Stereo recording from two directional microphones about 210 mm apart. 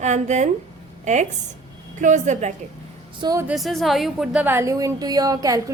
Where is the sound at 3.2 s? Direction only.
15° right (ahead or behind).